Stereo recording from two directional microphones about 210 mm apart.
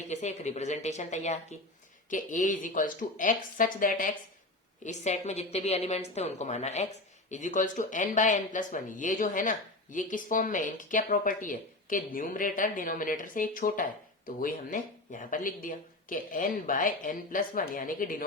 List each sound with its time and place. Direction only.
0.1 s speech: 30° left (ahead or behind)